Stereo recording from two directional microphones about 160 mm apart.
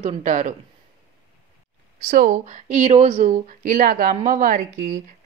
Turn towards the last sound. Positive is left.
turn(degrees=-60)  # may be behind; listen again after turning